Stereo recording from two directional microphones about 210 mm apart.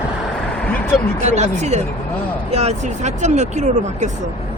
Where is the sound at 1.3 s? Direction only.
35° right (ahead or behind).